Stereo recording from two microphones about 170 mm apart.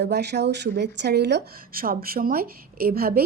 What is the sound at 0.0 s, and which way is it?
Speech, 80° right.